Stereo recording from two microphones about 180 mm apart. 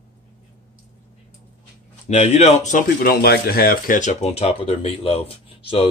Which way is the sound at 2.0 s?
40° left (ahead or behind).